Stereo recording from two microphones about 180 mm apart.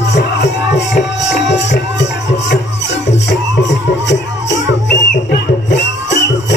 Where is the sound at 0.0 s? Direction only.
75° left (ahead or behind).